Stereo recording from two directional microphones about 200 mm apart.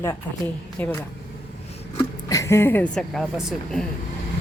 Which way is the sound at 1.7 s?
30° left (ahead or behind).